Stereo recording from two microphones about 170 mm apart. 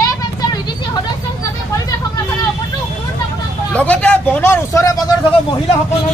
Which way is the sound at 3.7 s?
10° left (ahead or behind).